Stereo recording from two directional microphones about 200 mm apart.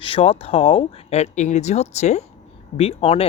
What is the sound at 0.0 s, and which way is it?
Speech, 25° left (ahead or behind).